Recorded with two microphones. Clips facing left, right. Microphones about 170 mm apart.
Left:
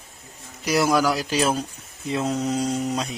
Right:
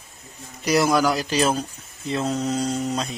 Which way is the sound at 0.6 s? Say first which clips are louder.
Right 1 dB; 5° left (ahead or behind).